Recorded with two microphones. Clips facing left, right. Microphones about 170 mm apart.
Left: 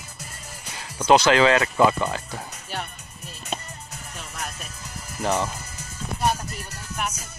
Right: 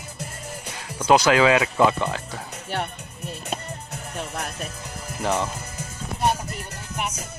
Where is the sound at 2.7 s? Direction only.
60° right (ahead or behind).